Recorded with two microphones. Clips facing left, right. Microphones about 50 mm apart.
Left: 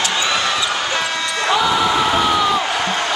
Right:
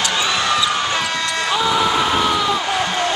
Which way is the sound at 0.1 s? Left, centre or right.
Centre.